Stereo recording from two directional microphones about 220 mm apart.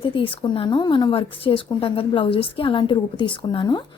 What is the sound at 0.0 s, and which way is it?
Speech, 25° left (ahead or behind).